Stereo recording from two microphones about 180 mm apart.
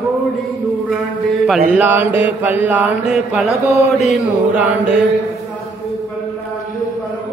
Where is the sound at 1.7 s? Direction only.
10° right (ahead or behind).